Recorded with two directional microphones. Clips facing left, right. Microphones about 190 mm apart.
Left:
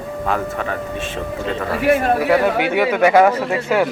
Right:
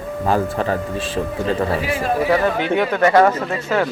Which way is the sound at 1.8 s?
60° left (ahead or behind).